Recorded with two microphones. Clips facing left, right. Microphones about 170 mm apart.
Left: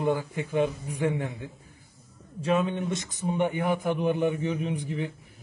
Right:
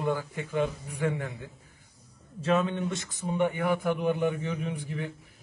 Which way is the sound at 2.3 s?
15° left (ahead or behind).